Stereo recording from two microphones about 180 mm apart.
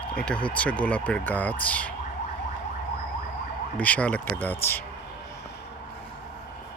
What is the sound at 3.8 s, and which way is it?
Speech, 10° left (ahead or behind).